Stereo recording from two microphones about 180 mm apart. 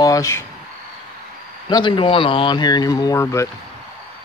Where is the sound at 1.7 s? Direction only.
25° left (ahead or behind).